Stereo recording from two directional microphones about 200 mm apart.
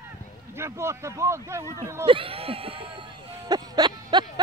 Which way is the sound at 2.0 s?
25° right (ahead or behind).